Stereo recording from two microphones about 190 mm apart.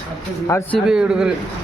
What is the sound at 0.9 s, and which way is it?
Speech, 5° right (ahead or behind).